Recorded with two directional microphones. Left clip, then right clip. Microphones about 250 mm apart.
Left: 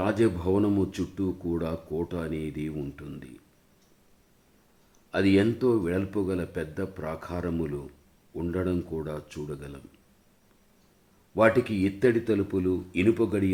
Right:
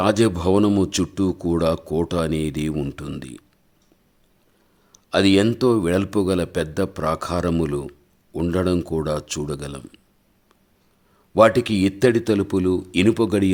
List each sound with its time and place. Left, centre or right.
0.0 s speech: right
4.9 s speech: right
11.3 s speech: right